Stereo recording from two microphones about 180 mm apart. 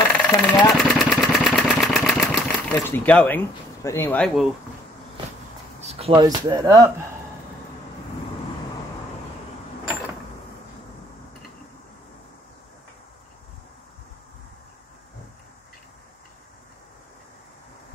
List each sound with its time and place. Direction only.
0.1 s engine: 5° left (ahead or behind)
5.8 s a sound: 35° right (ahead or behind)
6.2 s speech: 20° right (ahead or behind)